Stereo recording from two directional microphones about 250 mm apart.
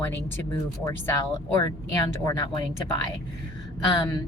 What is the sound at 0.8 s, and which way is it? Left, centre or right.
A woman's voice, centre.